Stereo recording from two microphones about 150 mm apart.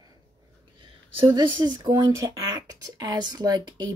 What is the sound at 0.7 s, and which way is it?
Speech, 35° right (ahead or behind).